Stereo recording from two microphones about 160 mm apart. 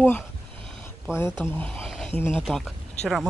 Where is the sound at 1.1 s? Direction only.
15° left (ahead or behind).